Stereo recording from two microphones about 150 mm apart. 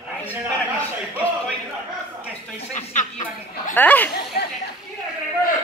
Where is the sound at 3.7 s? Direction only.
10° left (ahead or behind).